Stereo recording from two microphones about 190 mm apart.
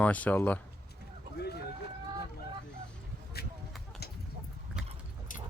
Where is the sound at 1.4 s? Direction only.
60° left (ahead or behind).